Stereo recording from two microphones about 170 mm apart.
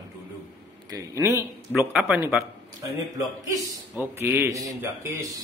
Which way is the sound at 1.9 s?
5° right (ahead or behind).